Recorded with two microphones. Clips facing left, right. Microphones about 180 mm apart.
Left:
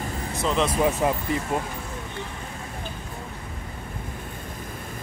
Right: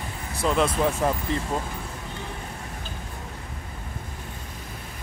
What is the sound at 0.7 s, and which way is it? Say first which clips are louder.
Speech: left 1 dB; 10° left (ahead or behind).